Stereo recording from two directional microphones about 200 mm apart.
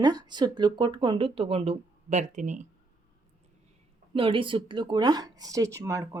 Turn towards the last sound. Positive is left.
turn(degrees=-15)  # may be behind; listen again after turning